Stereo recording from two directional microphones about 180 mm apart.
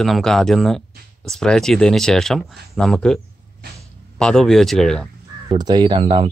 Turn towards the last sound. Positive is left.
turn(degrees=-25)  # may be behind; listen again after turning